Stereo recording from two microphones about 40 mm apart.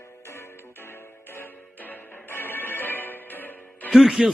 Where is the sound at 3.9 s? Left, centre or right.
Centre.